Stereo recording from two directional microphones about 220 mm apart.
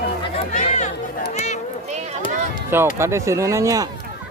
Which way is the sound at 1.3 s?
30° left (ahead or behind).